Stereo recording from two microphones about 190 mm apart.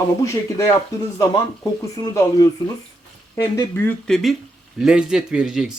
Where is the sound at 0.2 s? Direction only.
15° left (ahead or behind).